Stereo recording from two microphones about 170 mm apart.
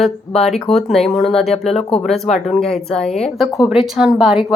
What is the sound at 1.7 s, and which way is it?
Speech, 35° left (ahead or behind).